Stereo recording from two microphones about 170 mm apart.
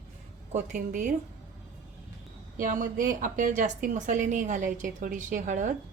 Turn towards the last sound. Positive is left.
turn(degrees=-50)  # may be behind; listen again after turning